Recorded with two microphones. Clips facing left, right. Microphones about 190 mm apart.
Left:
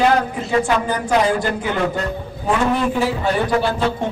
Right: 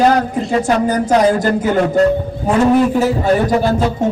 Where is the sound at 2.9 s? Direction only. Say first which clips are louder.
Right 5 dB; 40° right (ahead or behind).